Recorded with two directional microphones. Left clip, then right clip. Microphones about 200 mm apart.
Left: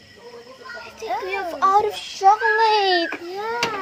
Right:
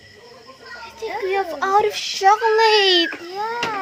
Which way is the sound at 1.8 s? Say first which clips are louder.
Right 1 dB; 25° right (ahead or behind).